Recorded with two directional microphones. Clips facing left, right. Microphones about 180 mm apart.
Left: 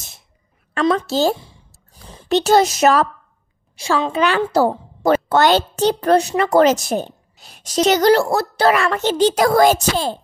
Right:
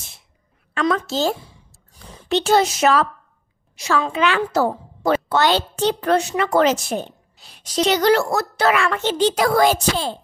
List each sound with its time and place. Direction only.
0.7 s a child's voice: 35° left (ahead or behind)
2.2 s a child's voice: 40° left (ahead or behind)
3.7 s a child's voice: 30° left (ahead or behind)
5.1 s a child's voice: 50° left (ahead or behind)